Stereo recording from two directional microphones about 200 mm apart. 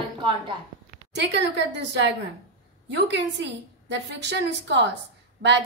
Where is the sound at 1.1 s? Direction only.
60° right (ahead or behind).